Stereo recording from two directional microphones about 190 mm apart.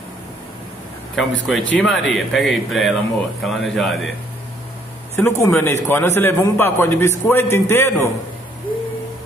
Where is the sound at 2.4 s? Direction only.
Centre (ahead or behind).